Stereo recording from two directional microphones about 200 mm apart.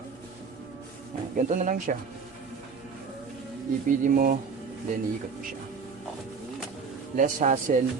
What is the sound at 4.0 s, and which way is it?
Speech, 45° right (ahead or behind).